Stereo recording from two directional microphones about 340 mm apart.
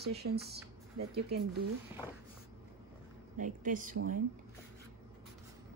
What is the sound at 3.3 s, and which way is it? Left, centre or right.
Speech, right.